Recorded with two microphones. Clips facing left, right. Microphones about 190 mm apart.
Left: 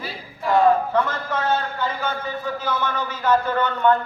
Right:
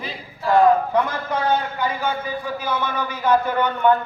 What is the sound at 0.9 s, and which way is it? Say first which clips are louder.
A man's voice: right 1 dB; 15° right (ahead or behind).